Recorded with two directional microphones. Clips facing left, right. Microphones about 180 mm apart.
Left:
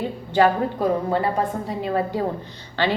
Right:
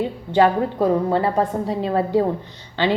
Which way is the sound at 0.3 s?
25° right (ahead or behind).